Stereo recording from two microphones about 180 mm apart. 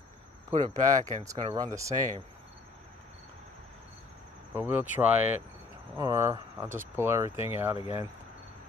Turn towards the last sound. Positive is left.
turn(degrees=30)  # may be behind; listen again after turning